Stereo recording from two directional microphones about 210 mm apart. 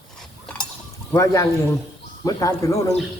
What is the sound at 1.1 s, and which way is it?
A man's voice, 15° left (ahead or behind).